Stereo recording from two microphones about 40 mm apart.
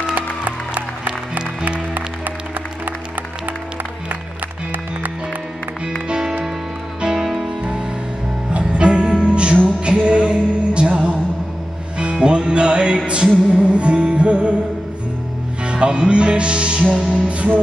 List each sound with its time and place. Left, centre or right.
0.1 s music: right
7.0 s music: centre
7.4 s music: right
15.6 s music: right
17.3 s music: right